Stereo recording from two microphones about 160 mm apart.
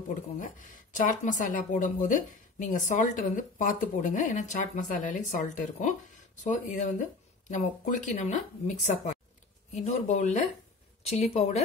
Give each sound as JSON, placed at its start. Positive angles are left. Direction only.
{"t": 0.4, "sound": "speech", "side_deg": 55}